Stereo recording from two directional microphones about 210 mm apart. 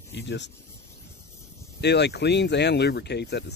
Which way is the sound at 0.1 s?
55° left (ahead or behind).